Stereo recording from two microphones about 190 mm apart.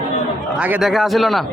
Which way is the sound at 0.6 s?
5° right (ahead or behind).